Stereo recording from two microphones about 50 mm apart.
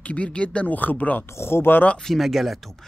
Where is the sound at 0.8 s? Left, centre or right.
Left.